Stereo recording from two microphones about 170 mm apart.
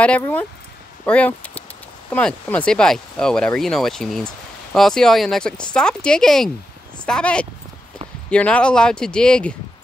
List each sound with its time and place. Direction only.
0.0 s speech: 10° left (ahead or behind)